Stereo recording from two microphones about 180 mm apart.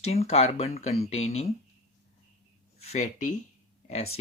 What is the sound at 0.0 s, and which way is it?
Speech, 35° left (ahead or behind).